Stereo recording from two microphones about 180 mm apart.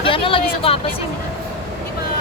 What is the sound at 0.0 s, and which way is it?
Vehicle, 30° left (ahead or behind).